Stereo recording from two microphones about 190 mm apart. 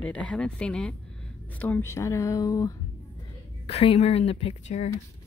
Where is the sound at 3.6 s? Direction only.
30° left (ahead or behind).